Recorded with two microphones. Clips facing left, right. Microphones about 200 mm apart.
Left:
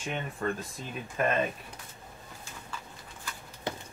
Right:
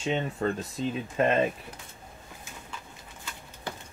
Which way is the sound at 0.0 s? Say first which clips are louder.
Right 5 dB; 25° right (ahead or behind).